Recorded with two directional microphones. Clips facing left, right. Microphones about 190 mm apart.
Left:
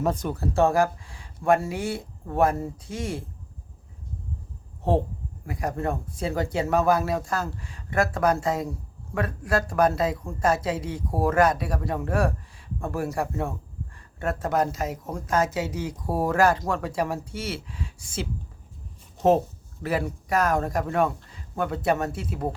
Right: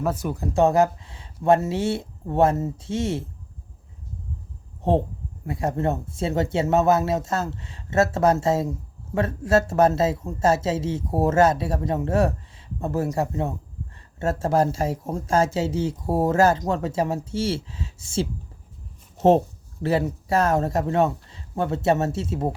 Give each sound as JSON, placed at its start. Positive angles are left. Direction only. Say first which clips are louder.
{"t": 0.0, "sound": "speech", "louder": "even", "side_deg": -5}
{"t": 5.5, "sound": "speech", "louder": "right 4 dB", "side_deg": -25}
{"t": 19.8, "sound": "speech", "louder": "right 4 dB", "side_deg": -25}